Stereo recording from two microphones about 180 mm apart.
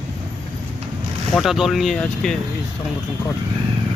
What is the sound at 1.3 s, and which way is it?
Speech, centre (ahead or behind).